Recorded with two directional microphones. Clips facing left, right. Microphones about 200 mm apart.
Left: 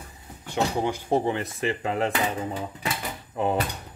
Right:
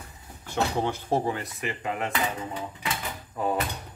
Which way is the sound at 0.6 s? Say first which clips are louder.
Left 2 dB; 15° left (ahead or behind).